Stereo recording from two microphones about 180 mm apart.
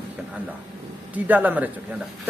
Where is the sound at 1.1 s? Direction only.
10° right (ahead or behind).